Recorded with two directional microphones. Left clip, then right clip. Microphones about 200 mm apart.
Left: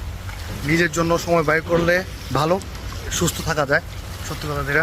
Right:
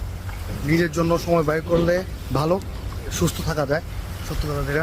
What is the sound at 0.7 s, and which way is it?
Speech, centre (ahead or behind).